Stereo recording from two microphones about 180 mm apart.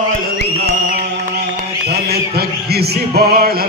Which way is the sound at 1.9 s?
65° right (ahead or behind).